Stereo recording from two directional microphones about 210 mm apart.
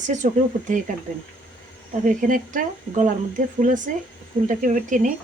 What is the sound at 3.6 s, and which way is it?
Speech, 40° right (ahead or behind).